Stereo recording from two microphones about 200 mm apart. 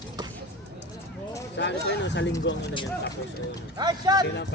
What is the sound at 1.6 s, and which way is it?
Speech, 60° left (ahead or behind).